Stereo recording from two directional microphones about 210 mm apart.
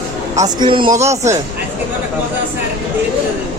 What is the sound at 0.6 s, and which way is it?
Speech, 20° right (ahead or behind).